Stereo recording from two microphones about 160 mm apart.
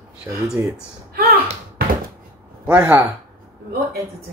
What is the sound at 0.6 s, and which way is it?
Speech, 15° right (ahead or behind).